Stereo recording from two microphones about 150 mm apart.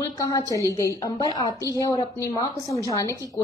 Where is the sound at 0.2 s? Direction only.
25° left (ahead or behind).